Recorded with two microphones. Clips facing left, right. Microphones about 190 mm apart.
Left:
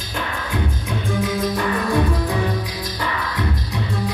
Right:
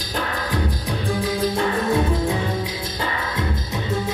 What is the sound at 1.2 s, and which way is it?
Music, 30° right (ahead or behind).